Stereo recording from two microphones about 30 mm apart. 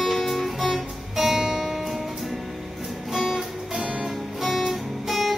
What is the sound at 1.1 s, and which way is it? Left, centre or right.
Music, centre.